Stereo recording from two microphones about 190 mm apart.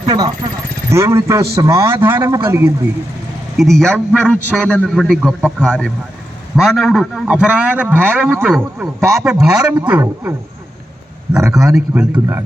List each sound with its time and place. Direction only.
0.0 s speech: 20° right (ahead or behind)
3.6 s a man's voice: centre (ahead or behind)
9.0 s speech: 15° right (ahead or behind)
9.2 s a man's voice: 5° right (ahead or behind)
11.5 s a man's voice: 5° right (ahead or behind)